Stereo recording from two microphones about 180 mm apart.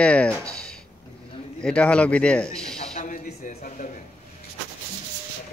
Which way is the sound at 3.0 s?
45° left (ahead or behind).